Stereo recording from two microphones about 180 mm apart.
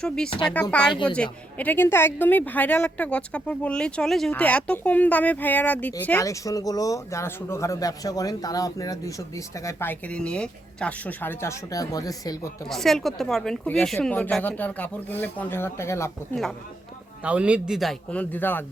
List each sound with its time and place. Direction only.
0.3 s speech: 25° left (ahead or behind)
0.5 s speech: 5° left (ahead or behind)
0.9 s speech: 25° left (ahead or behind)
1.1 s speech: 5° left (ahead or behind)
12.6 s speech: centre (ahead or behind)
17.2 s speech: 5° right (ahead or behind); by 18.6 s 10° left (ahead or behind)